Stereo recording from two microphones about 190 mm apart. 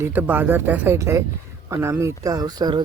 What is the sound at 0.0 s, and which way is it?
Speech, 10° right (ahead or behind).